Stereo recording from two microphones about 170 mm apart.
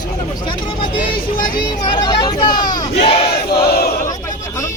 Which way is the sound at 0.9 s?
30° left (ahead or behind).